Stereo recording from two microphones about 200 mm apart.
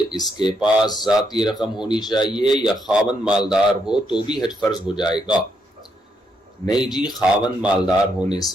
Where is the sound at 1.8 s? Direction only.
20° left (ahead or behind).